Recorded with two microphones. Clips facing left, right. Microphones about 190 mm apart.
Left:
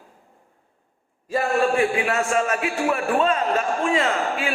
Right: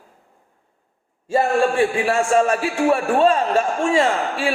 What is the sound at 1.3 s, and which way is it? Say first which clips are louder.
A man's voice: right 3 dB; 30° right (ahead or behind).